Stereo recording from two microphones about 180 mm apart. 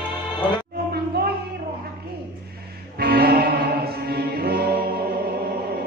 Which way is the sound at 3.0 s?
60° right (ahead or behind).